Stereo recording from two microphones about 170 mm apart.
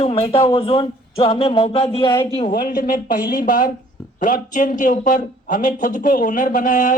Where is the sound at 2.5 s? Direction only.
55° left (ahead or behind).